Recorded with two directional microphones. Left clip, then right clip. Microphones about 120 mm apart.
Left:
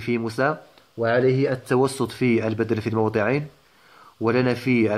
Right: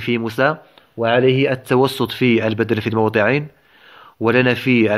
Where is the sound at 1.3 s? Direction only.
15° right (ahead or behind).